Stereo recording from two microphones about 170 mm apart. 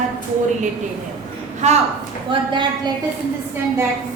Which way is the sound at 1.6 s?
45° right (ahead or behind).